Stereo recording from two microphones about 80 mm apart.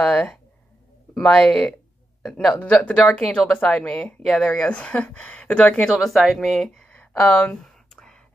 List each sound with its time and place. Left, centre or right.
1.1 s speech: centre
2.6 s speech: centre
3.0 s speech: centre
3.3 s speech: centre
5.9 s speech: centre